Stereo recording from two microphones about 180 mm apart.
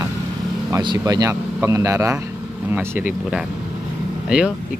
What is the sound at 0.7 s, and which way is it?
Speech, 25° right (ahead or behind).